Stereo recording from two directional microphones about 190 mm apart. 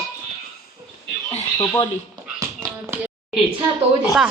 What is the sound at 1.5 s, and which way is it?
Speech, 20° left (ahead or behind).